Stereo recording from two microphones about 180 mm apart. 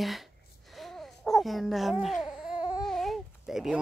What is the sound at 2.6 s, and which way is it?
Babbling, 20° left (ahead or behind).